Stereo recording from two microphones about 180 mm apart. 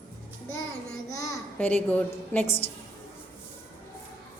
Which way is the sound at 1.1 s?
20° left (ahead or behind).